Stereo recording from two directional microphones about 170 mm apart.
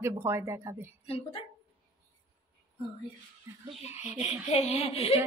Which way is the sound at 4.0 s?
40° left (ahead or behind).